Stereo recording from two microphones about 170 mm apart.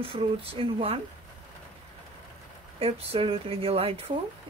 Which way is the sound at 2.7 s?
35° right (ahead or behind).